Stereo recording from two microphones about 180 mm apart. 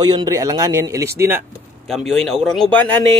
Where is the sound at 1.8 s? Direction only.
Centre (ahead or behind).